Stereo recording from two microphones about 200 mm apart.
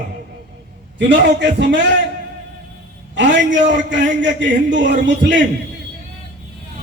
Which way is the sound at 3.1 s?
65° right (ahead or behind).